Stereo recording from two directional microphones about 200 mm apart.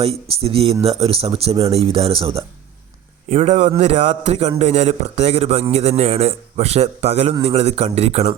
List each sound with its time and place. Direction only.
0.0 s a man's voice: 30° right (ahead or behind)